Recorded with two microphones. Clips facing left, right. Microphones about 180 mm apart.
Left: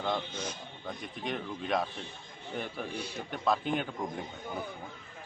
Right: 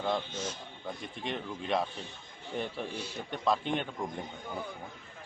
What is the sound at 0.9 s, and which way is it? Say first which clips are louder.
A man's voice: left 1 dB; centre (ahead or behind).